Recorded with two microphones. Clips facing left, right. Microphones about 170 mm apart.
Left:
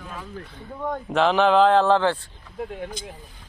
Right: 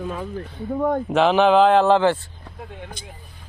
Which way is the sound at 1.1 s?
15° right (ahead or behind).